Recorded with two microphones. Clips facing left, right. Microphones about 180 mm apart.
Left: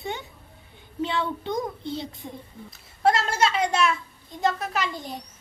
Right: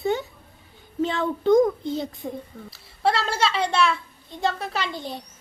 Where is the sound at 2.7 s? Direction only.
30° right (ahead or behind).